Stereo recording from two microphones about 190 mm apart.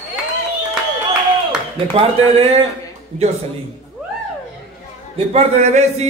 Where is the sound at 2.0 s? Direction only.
30° right (ahead or behind).